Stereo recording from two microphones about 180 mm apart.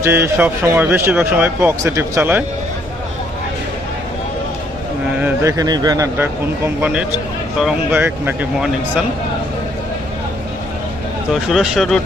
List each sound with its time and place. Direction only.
0.0 s a man's voice: 10° right (ahead or behind)
5.2 s a man's voice: 15° right (ahead or behind)
11.3 s speech: centre (ahead or behind)